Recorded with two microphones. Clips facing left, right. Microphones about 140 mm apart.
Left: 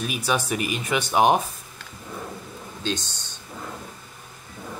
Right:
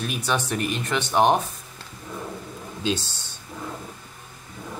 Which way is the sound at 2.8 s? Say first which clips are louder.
Right 3 dB; 5° right (ahead or behind).